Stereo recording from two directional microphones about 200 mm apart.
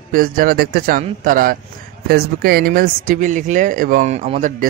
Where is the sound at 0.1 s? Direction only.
45° right (ahead or behind).